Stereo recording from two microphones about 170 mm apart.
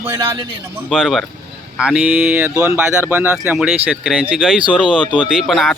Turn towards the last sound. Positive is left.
turn(degrees=0)  # may be behind; listen again after turning